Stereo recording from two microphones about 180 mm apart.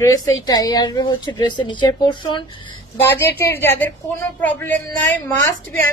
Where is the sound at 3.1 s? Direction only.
15° left (ahead or behind).